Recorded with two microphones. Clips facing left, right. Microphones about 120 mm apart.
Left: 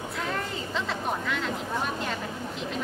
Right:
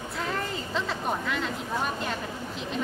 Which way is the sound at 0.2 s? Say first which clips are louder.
Right 1 dB; centre (ahead or behind).